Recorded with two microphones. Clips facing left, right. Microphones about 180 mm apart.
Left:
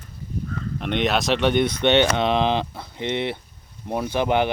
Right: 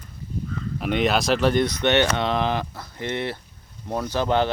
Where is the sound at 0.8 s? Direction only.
Centre (ahead or behind).